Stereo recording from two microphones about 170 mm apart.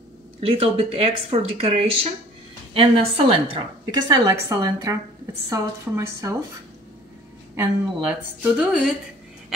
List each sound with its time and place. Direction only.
0.4 s speech: 35° right (ahead or behind)
3.9 s a woman's voice: 20° right (ahead or behind)
7.5 s a woman's voice: 10° right (ahead or behind)